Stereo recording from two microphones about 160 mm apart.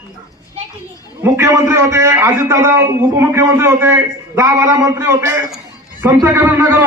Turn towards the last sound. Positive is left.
turn(degrees=-15)  # may be behind; listen again after turning